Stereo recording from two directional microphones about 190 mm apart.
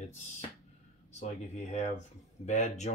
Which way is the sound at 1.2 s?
35° left (ahead or behind).